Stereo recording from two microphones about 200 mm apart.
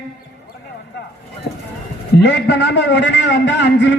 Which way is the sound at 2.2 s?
60° left (ahead or behind).